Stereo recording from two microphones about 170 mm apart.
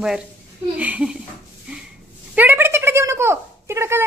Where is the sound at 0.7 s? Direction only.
10° right (ahead or behind).